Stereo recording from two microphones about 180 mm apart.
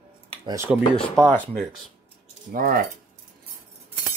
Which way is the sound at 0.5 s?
15° right (ahead or behind).